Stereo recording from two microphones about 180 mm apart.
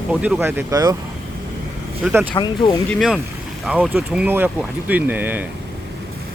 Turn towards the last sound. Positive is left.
turn(degrees=-10)  # may be behind; listen again after turning